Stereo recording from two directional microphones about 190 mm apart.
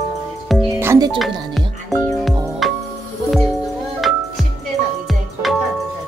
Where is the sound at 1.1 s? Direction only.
Centre (ahead or behind).